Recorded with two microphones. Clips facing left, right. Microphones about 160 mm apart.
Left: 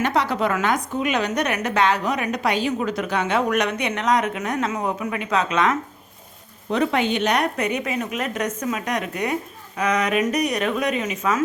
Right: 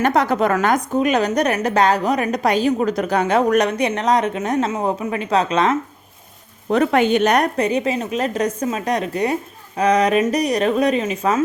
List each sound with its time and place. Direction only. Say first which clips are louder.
0.0 s a woman's voice: right 4 dB; 45° right (ahead or behind)
6.7 s a woman's voice: right 5 dB; 50° right (ahead or behind)
7.5 s a woman's voice: right 5 dB; 30° right (ahead or behind)